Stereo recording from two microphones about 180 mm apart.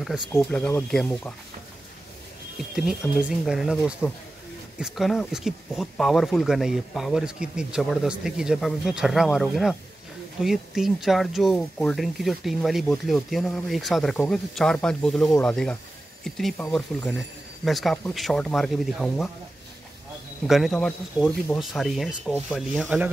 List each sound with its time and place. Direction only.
0.3 s speech: 10° left (ahead or behind)
2.7 s speech: 5° right (ahead or behind)
20.4 s speech: centre (ahead or behind)